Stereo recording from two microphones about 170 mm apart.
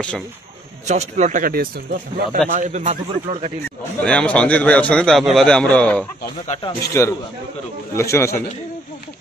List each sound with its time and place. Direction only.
0.8 s speech: 45° right (ahead or behind); by 2.0 s 60° right (ahead or behind)
2.5 s speech: 45° right (ahead or behind)
4.0 s a man's voice: 5° left (ahead or behind)